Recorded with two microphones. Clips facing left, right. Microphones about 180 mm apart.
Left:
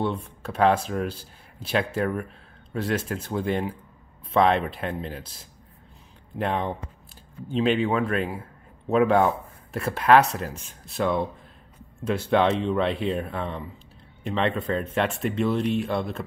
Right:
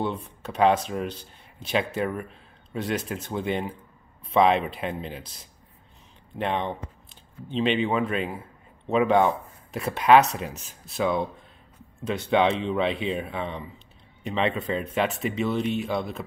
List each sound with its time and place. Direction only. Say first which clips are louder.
0.2 s speech: even; centre (ahead or behind)
6.3 s a man's voice: left 1 dB; centre (ahead or behind)